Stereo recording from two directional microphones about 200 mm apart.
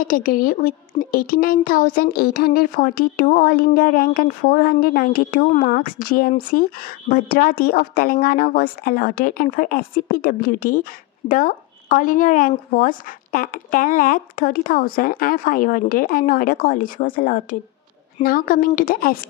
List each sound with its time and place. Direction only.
0.0 s a woman's voice: 45° left (ahead or behind)